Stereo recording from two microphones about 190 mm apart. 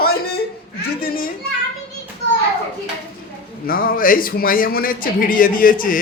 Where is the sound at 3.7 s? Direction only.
50° left (ahead or behind).